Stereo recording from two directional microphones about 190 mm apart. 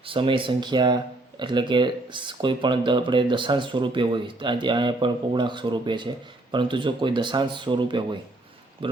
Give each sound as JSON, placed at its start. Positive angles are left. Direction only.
{"t": 0.0, "sound": "speech", "side_deg": -25}